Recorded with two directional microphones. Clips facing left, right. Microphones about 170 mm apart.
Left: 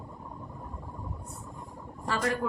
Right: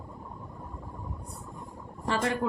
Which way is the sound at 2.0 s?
25° right (ahead or behind).